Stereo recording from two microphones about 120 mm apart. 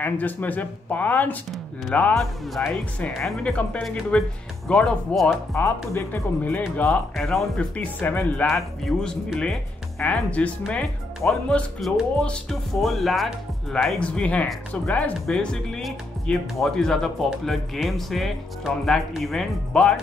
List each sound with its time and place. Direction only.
0.0 s speech: 15° left (ahead or behind)
5.5 s speech: 20° left (ahead or behind)
7.2 s speech: 5° left (ahead or behind)
8.5 s speech: centre (ahead or behind)